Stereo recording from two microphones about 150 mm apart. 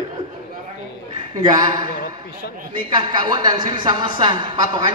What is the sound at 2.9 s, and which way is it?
A woman's voice, 30° right (ahead or behind).